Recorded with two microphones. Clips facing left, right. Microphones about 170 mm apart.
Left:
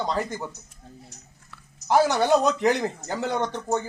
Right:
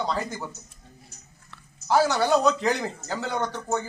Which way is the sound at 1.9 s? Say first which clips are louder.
Left 2 dB; 15° left (ahead or behind).